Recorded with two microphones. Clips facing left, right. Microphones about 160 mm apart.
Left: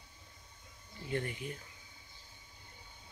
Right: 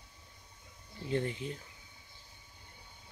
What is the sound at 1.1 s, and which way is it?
Speech, 25° right (ahead or behind).